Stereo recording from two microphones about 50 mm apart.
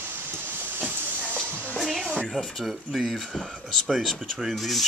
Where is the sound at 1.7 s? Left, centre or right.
Centre.